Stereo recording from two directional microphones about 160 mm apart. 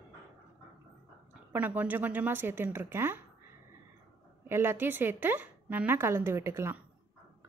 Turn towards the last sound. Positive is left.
turn(degrees=-15)  # may be behind; listen again after turning